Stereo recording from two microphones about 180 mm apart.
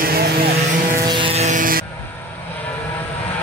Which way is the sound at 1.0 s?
30° right (ahead or behind).